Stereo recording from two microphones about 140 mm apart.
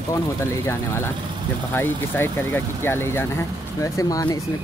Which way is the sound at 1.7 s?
15° left (ahead or behind).